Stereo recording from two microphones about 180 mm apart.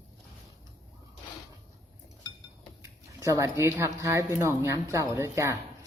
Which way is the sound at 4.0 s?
15° right (ahead or behind).